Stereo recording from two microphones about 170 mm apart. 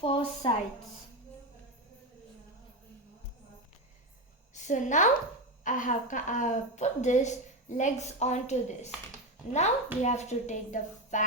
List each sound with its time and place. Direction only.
0.0 s speech: 30° left (ahead or behind)
4.5 s a woman's voice: 45° left (ahead or behind)